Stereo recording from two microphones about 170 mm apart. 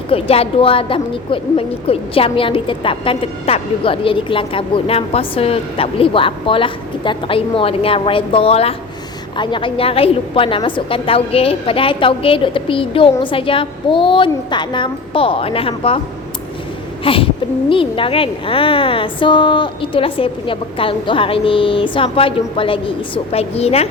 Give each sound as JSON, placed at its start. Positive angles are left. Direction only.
{"t": 0.1, "sound": "a woman's voice", "side_deg": 35}
{"t": 17.0, "sound": "a sound", "side_deg": 30}
{"t": 17.7, "sound": "a woman's voice", "side_deg": 30}